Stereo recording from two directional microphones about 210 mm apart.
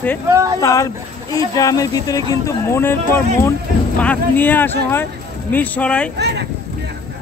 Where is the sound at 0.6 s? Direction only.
15° left (ahead or behind).